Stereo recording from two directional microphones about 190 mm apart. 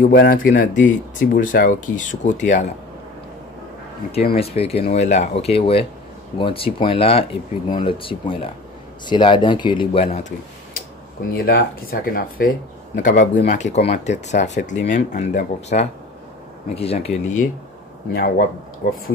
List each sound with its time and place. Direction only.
0.1 s speech: 50° left (ahead or behind)
4.4 s speech: 30° left (ahead or behind)
11.3 s speech: 55° left (ahead or behind)
18.1 s speech: 50° left (ahead or behind)